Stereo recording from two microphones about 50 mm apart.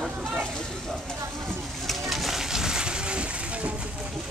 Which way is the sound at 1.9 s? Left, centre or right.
Centre.